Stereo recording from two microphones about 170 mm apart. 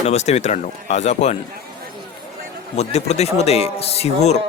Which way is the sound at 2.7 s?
40° left (ahead or behind).